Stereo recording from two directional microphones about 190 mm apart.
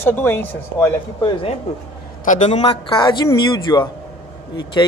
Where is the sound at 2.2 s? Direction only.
40° left (ahead or behind).